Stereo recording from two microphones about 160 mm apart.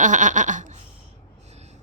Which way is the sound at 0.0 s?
50° right (ahead or behind).